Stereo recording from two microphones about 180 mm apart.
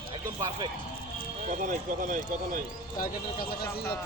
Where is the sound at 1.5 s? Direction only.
45° right (ahead or behind).